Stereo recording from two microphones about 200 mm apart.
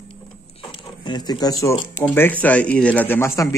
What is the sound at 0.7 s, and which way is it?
Speech, 20° left (ahead or behind).